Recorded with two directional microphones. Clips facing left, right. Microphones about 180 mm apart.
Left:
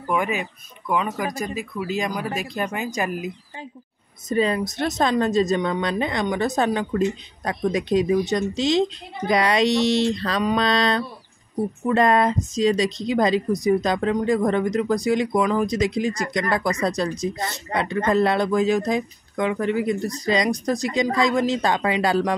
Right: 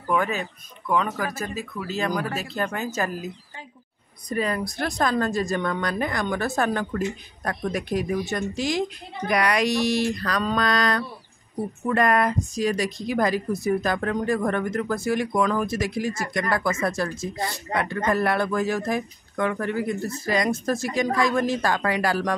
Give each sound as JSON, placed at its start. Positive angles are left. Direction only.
{"t": 0.1, "sound": "speech", "side_deg": 15}
{"t": 4.3, "sound": "speech", "side_deg": 25}